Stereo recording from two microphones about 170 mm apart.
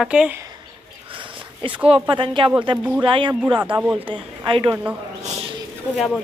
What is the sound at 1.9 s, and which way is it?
Speech, 30° right (ahead or behind).